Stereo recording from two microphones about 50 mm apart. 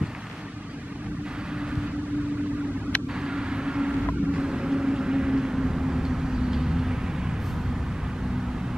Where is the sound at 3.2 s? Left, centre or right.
Centre.